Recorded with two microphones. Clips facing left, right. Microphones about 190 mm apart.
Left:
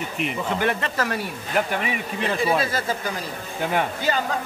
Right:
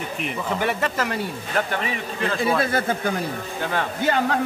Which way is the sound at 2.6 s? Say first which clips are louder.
Right 3 dB; 55° right (ahead or behind).